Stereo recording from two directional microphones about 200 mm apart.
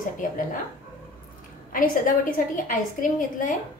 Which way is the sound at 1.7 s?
45° left (ahead or behind).